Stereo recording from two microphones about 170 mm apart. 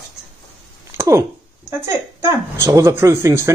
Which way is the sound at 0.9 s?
15° right (ahead or behind).